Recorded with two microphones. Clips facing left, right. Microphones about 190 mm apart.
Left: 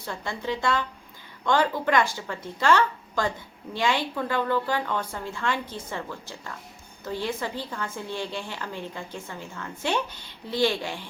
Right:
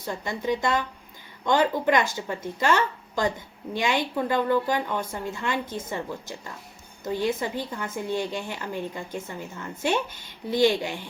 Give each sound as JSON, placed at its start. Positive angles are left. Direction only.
{"t": 0.0, "sound": "a woman's voice", "side_deg": -15}